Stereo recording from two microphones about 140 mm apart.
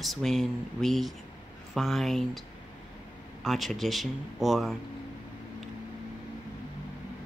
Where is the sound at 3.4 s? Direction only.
Centre (ahead or behind).